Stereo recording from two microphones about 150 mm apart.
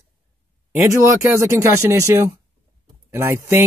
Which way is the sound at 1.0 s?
20° right (ahead or behind).